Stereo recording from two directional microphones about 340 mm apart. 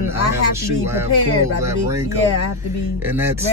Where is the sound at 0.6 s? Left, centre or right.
Centre.